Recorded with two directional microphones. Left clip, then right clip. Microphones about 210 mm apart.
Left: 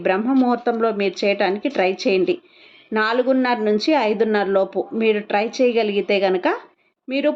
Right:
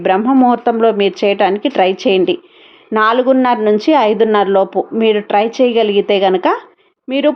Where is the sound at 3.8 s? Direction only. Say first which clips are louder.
Right 7 dB; 60° right (ahead or behind).